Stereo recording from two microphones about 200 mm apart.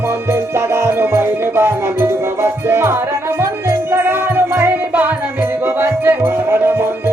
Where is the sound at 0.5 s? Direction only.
10° right (ahead or behind).